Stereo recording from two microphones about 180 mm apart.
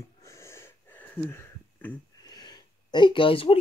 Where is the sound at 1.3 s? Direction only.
10° left (ahead or behind).